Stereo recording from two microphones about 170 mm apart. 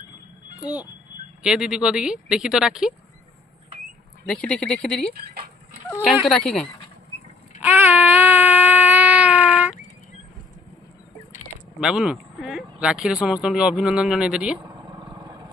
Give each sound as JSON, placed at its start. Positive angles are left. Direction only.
{"t": 1.4, "sound": "speech", "side_deg": -5}
{"t": 4.3, "sound": "speech", "side_deg": 5}
{"t": 6.2, "sound": "speech", "side_deg": 0}
{"t": 7.6, "sound": "baby cry", "side_deg": -10}
{"t": 11.8, "sound": "speech", "side_deg": -5}
{"t": 14.6, "sound": "vehicle", "side_deg": -25}